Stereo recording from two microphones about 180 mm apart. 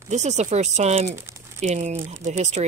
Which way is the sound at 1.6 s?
40° right (ahead or behind).